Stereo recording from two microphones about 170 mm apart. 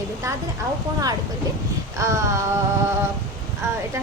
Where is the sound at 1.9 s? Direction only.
15° right (ahead or behind).